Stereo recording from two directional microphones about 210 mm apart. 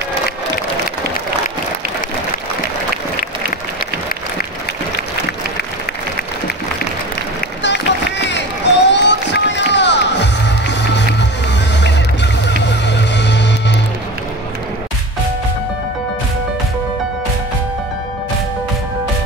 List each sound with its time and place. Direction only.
8.3 s run: 55° left (ahead or behind)
11.8 s music: 55° left (ahead or behind)